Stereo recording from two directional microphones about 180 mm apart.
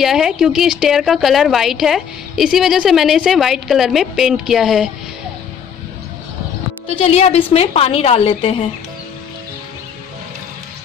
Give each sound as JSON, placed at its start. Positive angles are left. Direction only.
{"t": 0.0, "sound": "a woman's voice", "side_deg": 0}
{"t": 6.9, "sound": "a woman's voice", "side_deg": 35}